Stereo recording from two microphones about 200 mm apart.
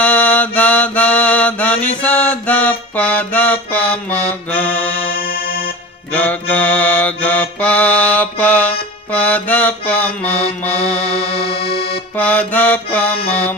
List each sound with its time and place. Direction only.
0.0 s mantra: 10° left (ahead or behind)
6.1 s mantra: 10° left (ahead or behind)
11.1 s music: 30° left (ahead or behind)
12.2 s mantra: 10° left (ahead or behind)